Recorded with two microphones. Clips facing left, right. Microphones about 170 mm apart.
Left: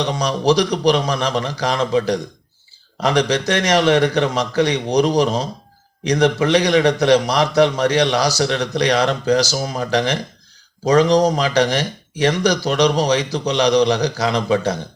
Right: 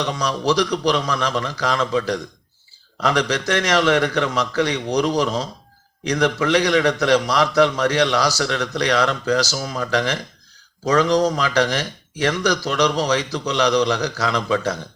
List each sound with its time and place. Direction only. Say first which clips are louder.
0.0 s a man's voice: left 3 dB; 15° left (ahead or behind)
9.6 s a man's voice: left 2 dB; 30° left (ahead or behind)
9.9 s a man's voice: left 3 dB; 15° left (ahead or behind)